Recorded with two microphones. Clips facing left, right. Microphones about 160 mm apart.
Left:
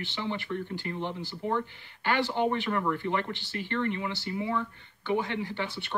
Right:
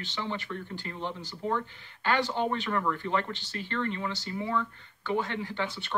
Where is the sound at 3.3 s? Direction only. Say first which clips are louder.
Left 2 dB; 60° left (ahead or behind).